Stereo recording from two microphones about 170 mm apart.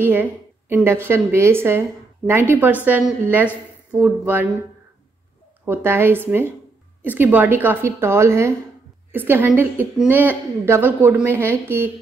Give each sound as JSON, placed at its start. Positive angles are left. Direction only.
{"t": 0.0, "sound": "a woman's voice", "side_deg": -10}
{"t": 5.7, "sound": "a woman's voice", "side_deg": -15}